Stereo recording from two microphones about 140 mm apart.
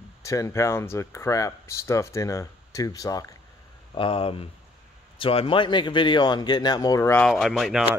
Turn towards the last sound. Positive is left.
turn(degrees=0)  # may be behind; listen again after turning